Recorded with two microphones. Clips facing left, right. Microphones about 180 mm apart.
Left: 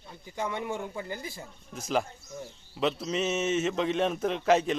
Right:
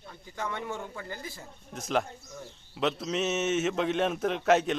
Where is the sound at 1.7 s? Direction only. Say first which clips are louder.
Even; centre (ahead or behind).